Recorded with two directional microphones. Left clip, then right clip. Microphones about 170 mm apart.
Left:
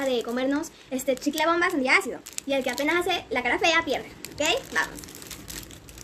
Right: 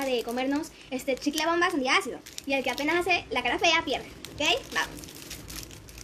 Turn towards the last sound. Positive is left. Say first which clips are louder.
# left 2 dB
turn(degrees=30)  # may be behind; listen again after turning